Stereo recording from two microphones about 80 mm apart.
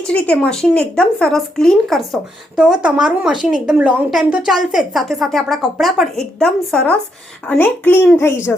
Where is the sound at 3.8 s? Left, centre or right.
Right.